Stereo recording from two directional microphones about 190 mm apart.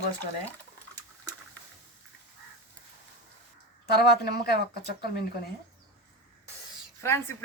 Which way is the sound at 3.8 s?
55° left (ahead or behind).